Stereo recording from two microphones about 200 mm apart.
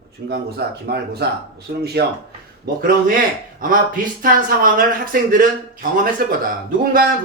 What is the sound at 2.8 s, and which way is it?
Speech, 45° right (ahead or behind).